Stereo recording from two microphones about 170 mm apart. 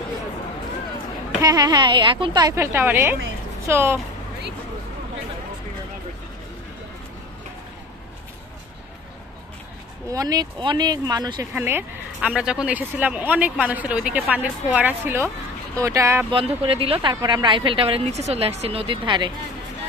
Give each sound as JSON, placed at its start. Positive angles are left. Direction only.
{"t": 1.4, "sound": "a woman's voice", "side_deg": -25}
{"t": 10.0, "sound": "a woman's voice", "side_deg": -20}
{"t": 11.5, "sound": "speech", "side_deg": -10}
{"t": 16.3, "sound": "a woman's voice", "side_deg": -30}